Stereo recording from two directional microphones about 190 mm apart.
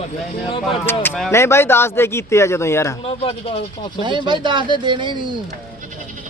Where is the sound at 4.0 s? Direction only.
25° right (ahead or behind).